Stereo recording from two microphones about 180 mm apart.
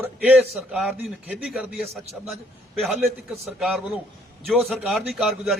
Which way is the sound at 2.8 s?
Centre (ahead or behind).